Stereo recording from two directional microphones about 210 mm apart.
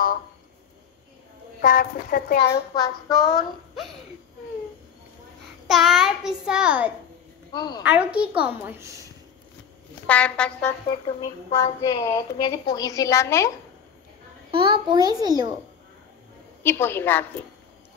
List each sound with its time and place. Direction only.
1.6 s speech: 40° left (ahead or behind)
2.5 s a woman's voice: 15° left (ahead or behind)
5.7 s a child's voice: centre (ahead or behind)
7.5 s speech: 20° left (ahead or behind)
7.8 s a woman's voice: 5° right (ahead or behind)
10.0 s a child's voice: 5° left (ahead or behind)
10.9 s a woman's voice: 20° left (ahead or behind)
14.5 s a child's voice: 25° right (ahead or behind)
16.6 s a woman's voice: 10° left (ahead or behind)